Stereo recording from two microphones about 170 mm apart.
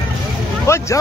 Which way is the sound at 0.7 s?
15° left (ahead or behind).